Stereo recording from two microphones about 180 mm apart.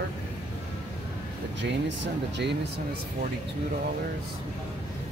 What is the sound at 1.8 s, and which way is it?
Speech, 75° right (ahead or behind).